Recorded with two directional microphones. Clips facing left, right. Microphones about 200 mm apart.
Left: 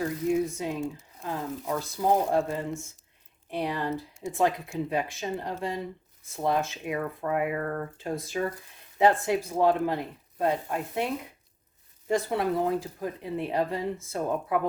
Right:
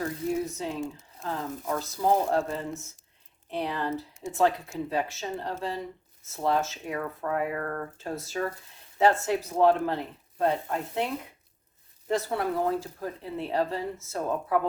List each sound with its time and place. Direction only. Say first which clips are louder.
0.5 s speech: left 1 dB; 15° left (ahead or behind)